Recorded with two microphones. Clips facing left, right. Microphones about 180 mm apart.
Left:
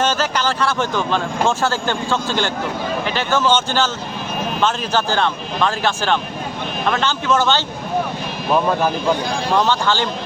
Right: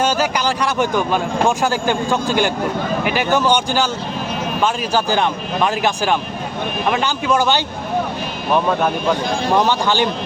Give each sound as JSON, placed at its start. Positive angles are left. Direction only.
{"t": 0.0, "sound": "speech", "side_deg": -10}
{"t": 9.5, "sound": "speech", "side_deg": -15}